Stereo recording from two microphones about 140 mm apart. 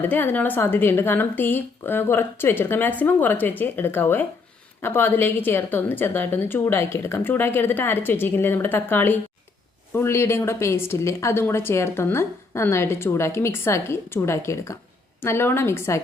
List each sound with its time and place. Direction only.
0.0 s a woman's voice: 15° left (ahead or behind)